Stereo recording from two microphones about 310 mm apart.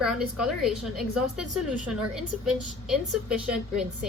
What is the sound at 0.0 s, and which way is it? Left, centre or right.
A woman's voice, centre.